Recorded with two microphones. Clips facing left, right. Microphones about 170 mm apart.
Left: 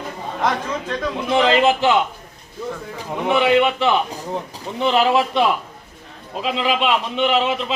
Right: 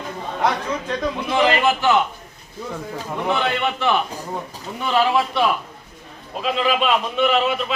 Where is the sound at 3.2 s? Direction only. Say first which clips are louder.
Left 6 dB; 15° left (ahead or behind).